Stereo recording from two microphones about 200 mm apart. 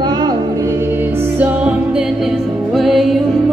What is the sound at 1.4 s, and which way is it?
Music, 5° right (ahead or behind).